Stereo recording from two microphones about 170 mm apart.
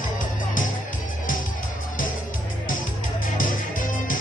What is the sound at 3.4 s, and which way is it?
Music, 50° left (ahead or behind).